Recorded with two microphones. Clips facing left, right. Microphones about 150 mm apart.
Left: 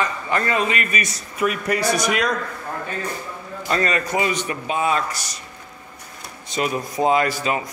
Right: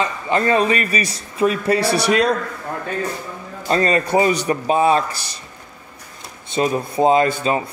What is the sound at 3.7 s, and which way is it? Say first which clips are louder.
Speech: right 5 dB; 30° right (ahead or behind).